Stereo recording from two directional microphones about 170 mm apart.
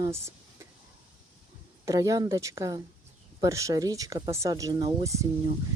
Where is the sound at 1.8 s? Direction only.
20° right (ahead or behind).